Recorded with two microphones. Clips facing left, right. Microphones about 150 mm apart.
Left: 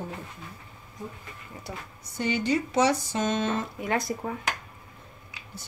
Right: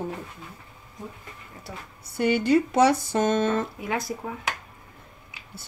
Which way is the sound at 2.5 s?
55° right (ahead or behind).